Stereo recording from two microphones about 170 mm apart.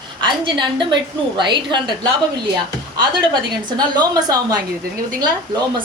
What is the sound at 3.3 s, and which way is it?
A woman's voice, 25° right (ahead or behind).